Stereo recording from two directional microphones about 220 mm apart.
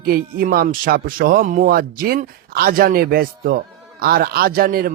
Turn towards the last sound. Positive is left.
turn(degrees=-40)  # may be behind; listen again after turning